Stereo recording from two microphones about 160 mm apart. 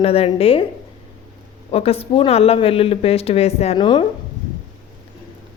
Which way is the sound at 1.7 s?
40° left (ahead or behind).